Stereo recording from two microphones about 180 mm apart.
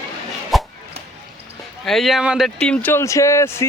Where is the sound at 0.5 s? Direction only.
Centre (ahead or behind).